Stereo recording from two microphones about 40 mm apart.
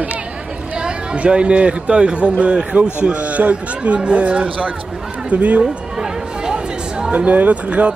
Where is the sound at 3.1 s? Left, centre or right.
Right.